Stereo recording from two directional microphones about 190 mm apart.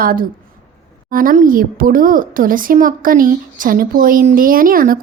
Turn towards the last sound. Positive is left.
turn(degrees=-50)  # may be behind; listen again after turning